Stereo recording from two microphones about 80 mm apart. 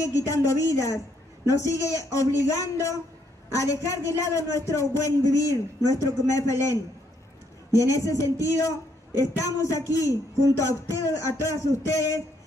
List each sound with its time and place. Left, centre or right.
0.0 s a man's voice: left